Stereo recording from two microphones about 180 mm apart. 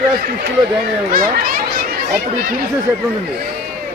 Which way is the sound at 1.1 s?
50° right (ahead or behind).